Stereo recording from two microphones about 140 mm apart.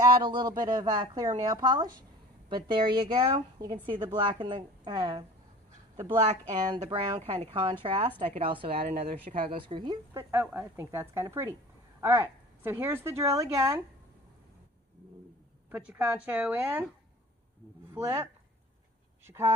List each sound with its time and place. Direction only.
0.0 s a woman's voice: 30° right (ahead or behind)
10.1 s a woman's voice: 15° right (ahead or behind)
15.7 s speech: 15° right (ahead or behind)
17.9 s a woman's voice: 20° right (ahead or behind)